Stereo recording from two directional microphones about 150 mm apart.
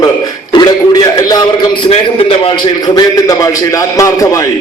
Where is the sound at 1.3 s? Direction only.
25° left (ahead or behind).